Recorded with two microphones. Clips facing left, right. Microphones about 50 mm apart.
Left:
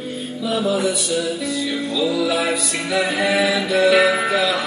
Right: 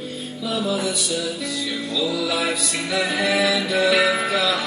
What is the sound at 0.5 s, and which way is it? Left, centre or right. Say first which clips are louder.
Music: left 4 dB; centre.